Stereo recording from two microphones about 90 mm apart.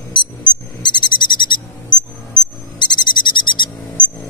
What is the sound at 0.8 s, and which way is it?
Owl, 60° left (ahead or behind).